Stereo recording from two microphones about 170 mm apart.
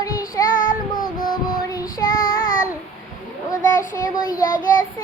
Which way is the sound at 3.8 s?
55° left (ahead or behind).